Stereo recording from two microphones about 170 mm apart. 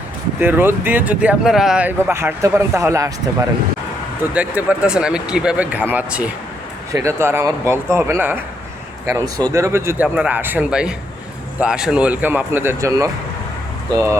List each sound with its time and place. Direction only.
0.3 s speech: 10° right (ahead or behind)
4.2 s speech: 10° right (ahead or behind)
9.5 s speech: 15° right (ahead or behind)